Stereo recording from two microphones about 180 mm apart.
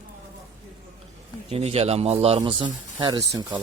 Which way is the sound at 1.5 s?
35° right (ahead or behind).